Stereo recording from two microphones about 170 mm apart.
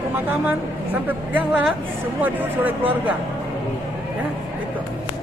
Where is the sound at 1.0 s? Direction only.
10° right (ahead or behind).